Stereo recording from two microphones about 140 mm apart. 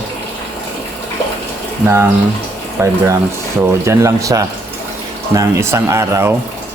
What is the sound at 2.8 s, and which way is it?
A man's voice, 20° right (ahead or behind).